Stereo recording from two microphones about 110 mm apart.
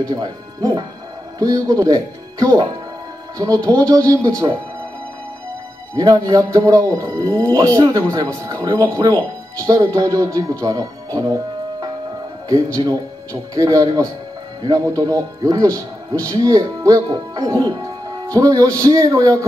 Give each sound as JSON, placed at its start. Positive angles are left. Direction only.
{"t": 0.0, "sound": "speech", "side_deg": -35}
{"t": 5.9, "sound": "speech", "side_deg": -35}
{"t": 9.6, "sound": "speech", "side_deg": -30}
{"t": 12.4, "sound": "speech", "side_deg": -30}